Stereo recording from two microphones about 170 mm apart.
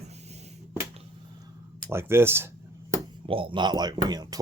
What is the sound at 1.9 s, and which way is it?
Speech, 15° right (ahead or behind).